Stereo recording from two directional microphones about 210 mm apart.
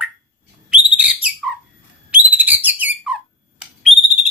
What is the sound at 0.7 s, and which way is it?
Whistle, 5° right (ahead or behind).